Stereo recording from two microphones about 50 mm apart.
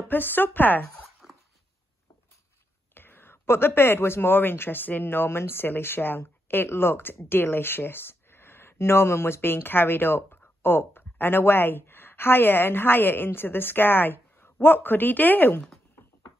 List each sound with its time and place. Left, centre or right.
0.1 s speech: left
1.2 s dog: centre
2.9 s speech: left